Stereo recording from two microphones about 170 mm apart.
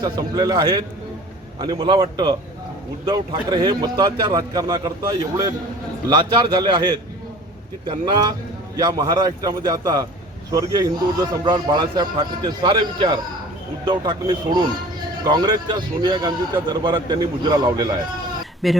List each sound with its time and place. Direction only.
0.0 s speech: 25° right (ahead or behind)
6.1 s speech: 25° right (ahead or behind)
18.6 s speech: centre (ahead or behind)